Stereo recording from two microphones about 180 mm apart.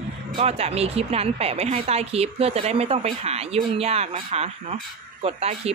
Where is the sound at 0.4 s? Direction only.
35° right (ahead or behind).